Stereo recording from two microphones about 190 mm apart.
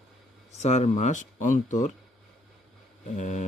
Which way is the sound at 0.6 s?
35° left (ahead or behind).